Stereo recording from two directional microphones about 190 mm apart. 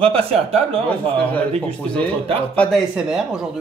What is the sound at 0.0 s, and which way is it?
Speech, 30° right (ahead or behind).